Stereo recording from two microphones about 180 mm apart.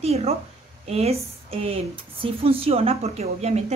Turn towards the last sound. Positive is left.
turn(degrees=-35)  # may be behind; listen again after turning